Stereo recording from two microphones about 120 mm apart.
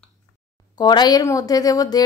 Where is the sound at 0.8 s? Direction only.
35° left (ahead or behind).